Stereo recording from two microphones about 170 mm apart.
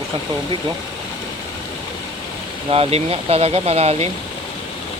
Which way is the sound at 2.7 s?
35° right (ahead or behind).